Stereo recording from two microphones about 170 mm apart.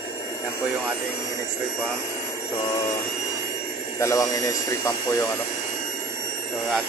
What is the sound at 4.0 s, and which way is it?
Speech, 20° left (ahead or behind).